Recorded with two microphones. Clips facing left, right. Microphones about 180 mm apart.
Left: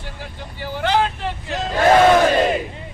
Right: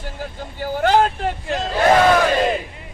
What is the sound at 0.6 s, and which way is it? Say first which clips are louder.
Vehicle: right 3 dB; 45° right (ahead or behind).